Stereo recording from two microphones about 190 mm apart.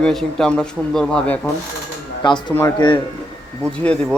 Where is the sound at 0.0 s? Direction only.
Centre (ahead or behind).